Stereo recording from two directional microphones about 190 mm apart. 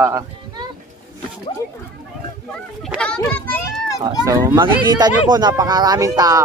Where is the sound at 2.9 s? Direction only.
5° left (ahead or behind).